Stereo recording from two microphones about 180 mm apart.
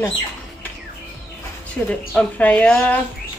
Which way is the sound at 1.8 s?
5° left (ahead or behind).